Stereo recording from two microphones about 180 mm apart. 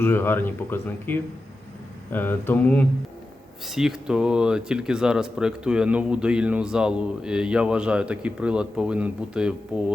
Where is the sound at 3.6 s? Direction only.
Centre (ahead or behind).